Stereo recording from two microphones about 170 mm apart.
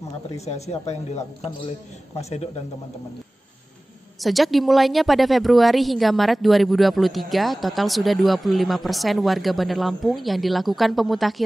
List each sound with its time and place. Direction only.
0.5 s speech: 40° left (ahead or behind)
4.2 s speech: centre (ahead or behind)